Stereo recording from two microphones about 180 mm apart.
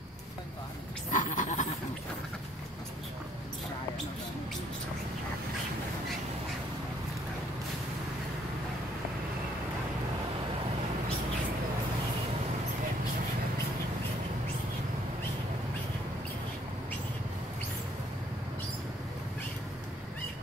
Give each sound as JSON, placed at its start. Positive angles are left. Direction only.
{"t": 1.1, "sound": "goat", "side_deg": 45}